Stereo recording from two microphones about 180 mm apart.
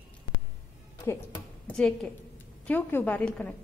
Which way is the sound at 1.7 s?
5° left (ahead or behind).